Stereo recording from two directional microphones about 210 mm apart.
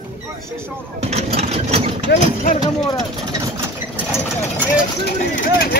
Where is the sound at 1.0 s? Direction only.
30° right (ahead or behind).